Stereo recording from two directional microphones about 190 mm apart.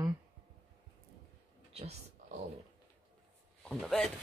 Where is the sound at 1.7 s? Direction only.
30° right (ahead or behind).